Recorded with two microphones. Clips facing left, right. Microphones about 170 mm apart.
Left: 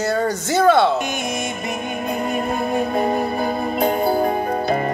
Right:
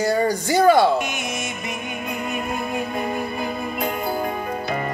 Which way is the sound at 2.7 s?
35° left (ahead or behind).